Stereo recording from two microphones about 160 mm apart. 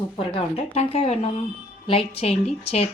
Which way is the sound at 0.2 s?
35° left (ahead or behind).